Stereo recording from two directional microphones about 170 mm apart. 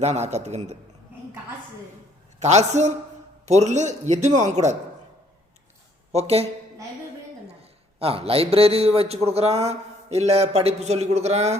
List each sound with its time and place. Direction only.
0.0 s a man's voice: 40° right (ahead or behind)
2.4 s a man's voice: 40° right (ahead or behind)
6.1 s speech: 40° right (ahead or behind)
7.9 s a man's voice: 35° right (ahead or behind)